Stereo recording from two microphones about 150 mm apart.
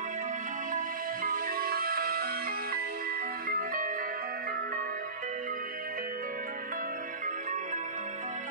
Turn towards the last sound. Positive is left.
turn(degrees=-60)  # may be behind; listen again after turning